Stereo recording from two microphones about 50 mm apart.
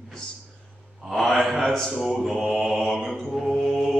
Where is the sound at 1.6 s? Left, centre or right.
Centre.